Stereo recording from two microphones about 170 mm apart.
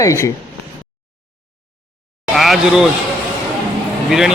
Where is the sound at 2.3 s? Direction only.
Centre (ahead or behind).